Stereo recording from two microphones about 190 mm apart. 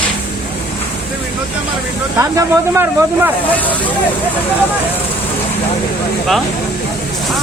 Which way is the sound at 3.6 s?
10° left (ahead or behind).